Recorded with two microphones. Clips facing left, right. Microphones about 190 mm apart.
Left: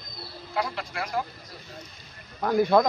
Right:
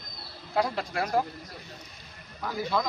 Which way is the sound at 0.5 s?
35° right (ahead or behind).